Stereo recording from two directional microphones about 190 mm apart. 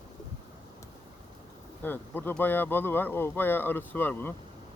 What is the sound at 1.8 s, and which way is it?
Speech, 10° left (ahead or behind).